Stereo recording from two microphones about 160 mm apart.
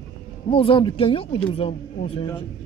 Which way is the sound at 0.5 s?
30° left (ahead or behind).